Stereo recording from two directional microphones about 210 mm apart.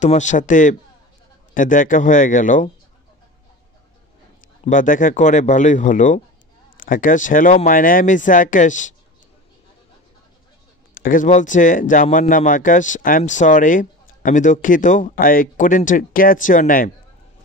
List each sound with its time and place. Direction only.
0.0 s speech: 35° left (ahead or behind)
4.6 s speech: 40° left (ahead or behind)
11.0 s speech: 40° left (ahead or behind)